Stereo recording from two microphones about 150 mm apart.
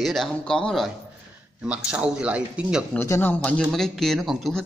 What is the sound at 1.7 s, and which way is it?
Speech, 5° right (ahead or behind).